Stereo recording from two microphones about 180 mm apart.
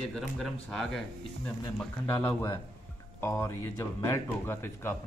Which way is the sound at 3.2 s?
15° left (ahead or behind).